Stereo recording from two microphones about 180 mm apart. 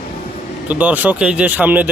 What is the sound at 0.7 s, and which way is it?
Speech, 10° right (ahead or behind).